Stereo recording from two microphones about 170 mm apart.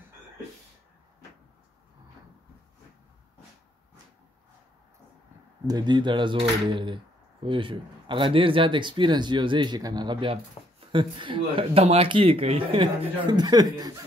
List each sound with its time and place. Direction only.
5.7 s speech: 25° right (ahead or behind)